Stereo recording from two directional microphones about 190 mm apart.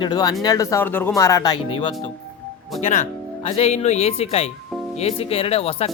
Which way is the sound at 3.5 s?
35° left (ahead or behind).